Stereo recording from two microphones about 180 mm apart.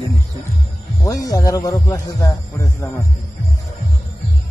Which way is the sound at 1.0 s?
20° left (ahead or behind).